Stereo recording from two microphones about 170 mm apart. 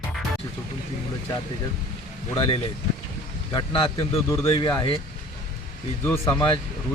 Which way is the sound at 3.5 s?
30° left (ahead or behind).